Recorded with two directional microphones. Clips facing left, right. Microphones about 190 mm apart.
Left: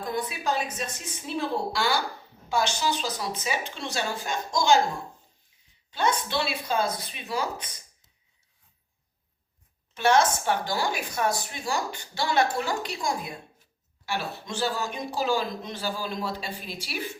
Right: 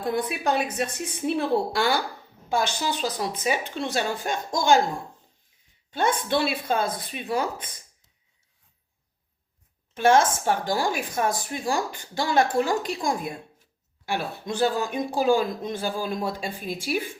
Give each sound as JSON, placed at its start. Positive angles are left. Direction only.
{"t": 0.0, "sound": "a woman's voice", "side_deg": -60}
{"t": 5.9, "sound": "speech", "side_deg": -50}
{"t": 9.9, "sound": "speech", "side_deg": -45}